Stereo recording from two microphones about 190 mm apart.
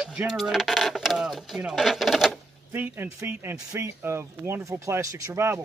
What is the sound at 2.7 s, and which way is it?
Speech, 10° right (ahead or behind).